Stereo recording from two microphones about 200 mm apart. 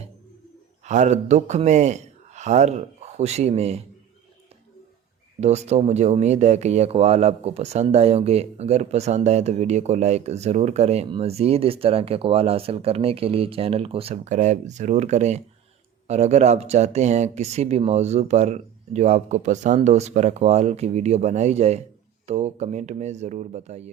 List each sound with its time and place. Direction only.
0.9 s a man's voice: 35° right (ahead or behind)
5.4 s speech: 35° right (ahead or behind)